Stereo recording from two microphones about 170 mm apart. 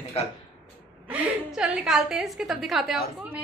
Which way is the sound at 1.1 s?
5° right (ahead or behind).